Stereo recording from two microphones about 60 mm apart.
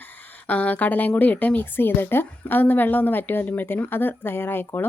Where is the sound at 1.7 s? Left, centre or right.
Left.